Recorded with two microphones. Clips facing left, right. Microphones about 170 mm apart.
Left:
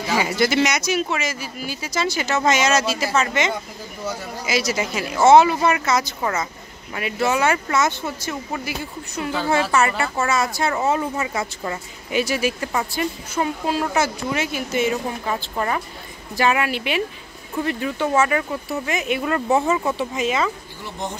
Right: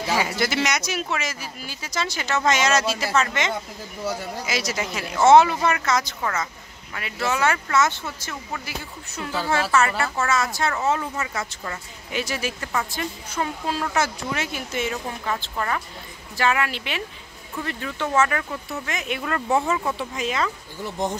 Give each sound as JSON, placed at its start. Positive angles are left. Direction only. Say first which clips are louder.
{"t": 0.1, "sound": "speech", "louder": "left 4 dB", "side_deg": 0}
{"t": 6.9, "sound": "speech", "louder": "left 5 dB", "side_deg": 20}
{"t": 15.5, "sound": "speech", "louder": "left 3 dB", "side_deg": 20}